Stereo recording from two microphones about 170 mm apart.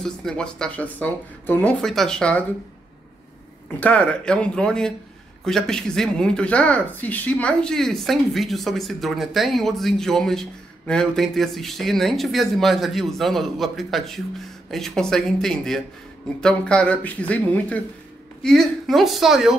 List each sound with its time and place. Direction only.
0.0 s speech: 5° left (ahead or behind)
3.8 s speech: 5° left (ahead or behind)